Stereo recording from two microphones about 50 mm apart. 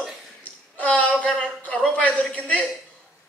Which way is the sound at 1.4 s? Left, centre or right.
Left.